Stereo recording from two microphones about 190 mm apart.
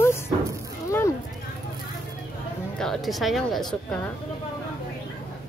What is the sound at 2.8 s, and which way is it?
Speech, centre (ahead or behind).